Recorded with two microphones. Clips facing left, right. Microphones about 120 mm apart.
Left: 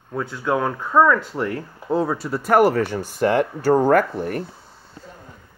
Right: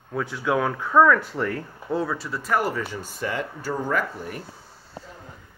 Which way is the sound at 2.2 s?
55° left (ahead or behind).